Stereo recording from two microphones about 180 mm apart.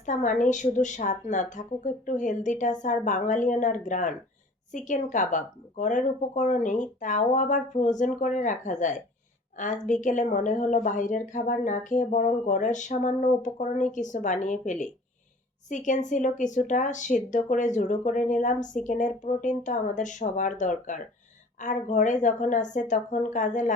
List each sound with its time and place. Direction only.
0.0 s speech: 45° left (ahead or behind)